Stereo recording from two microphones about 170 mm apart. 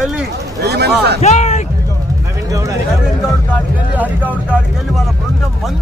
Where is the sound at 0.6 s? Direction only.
75° right (ahead or behind).